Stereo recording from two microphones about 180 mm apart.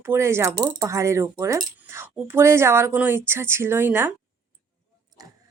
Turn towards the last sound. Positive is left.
turn(degrees=-10)  # may be behind; listen again after turning